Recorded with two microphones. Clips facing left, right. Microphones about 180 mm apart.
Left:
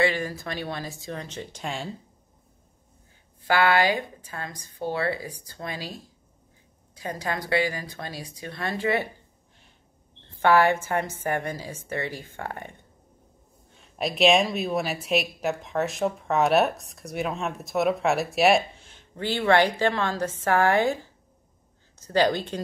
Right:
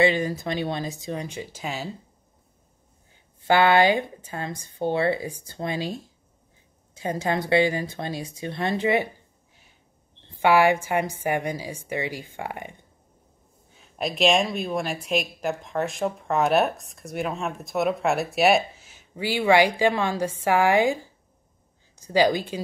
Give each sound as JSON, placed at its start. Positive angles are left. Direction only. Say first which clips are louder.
{"t": 0.0, "sound": "speech", "louder": "right 4 dB", "side_deg": -20}
{"t": 3.4, "sound": "speech", "louder": "right 3 dB", "side_deg": -25}
{"t": 10.3, "sound": "a woman's voice", "louder": "right 1 dB", "side_deg": -10}
{"t": 13.7, "sound": "speech", "louder": "left 1 dB", "side_deg": 0}